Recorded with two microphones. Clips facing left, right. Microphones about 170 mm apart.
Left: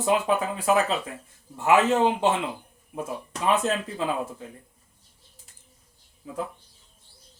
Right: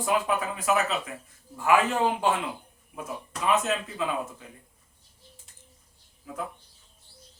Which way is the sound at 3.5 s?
35° left (ahead or behind).